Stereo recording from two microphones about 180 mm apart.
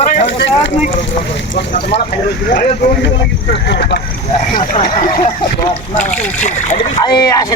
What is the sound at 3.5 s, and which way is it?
Speech, 70° left (ahead or behind).